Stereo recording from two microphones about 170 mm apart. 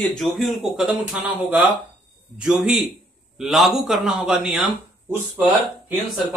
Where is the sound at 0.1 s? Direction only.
Centre (ahead or behind).